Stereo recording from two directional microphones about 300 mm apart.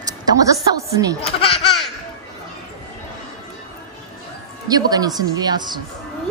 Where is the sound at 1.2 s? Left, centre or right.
Centre.